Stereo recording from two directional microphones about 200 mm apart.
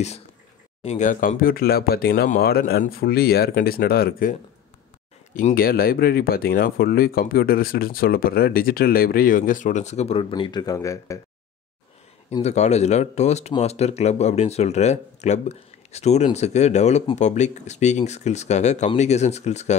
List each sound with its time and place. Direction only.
0.8 s speech: 35° left (ahead or behind); by 11.1 s 15° left (ahead or behind)
12.3 s speech: 30° left (ahead or behind)